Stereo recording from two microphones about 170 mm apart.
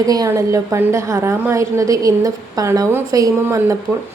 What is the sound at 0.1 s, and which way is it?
A woman's voice, 20° right (ahead or behind).